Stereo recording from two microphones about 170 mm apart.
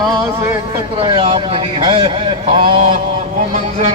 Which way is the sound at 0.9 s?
35° right (ahead or behind).